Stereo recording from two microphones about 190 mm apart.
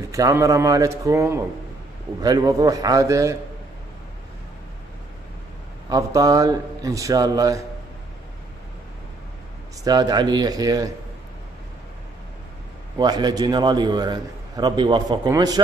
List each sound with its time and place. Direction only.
0.1 s a man's voice: 15° right (ahead or behind)
5.9 s a man's voice: 20° right (ahead or behind)
9.8 s a man's voice: 20° right (ahead or behind)
12.9 s a man's voice: 20° right (ahead or behind)